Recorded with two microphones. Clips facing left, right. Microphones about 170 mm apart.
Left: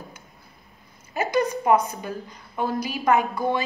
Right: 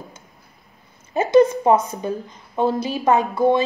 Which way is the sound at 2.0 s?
20° right (ahead or behind).